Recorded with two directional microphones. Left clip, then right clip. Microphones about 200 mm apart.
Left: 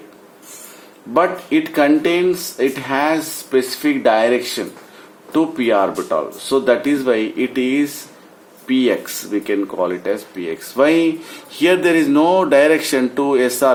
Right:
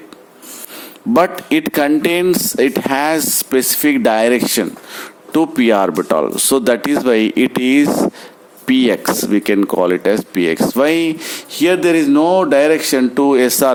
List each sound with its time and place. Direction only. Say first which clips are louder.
1.1 s speech: right 2 dB; 50° right (ahead or behind)
11.6 s speech: right 1 dB; 30° right (ahead or behind)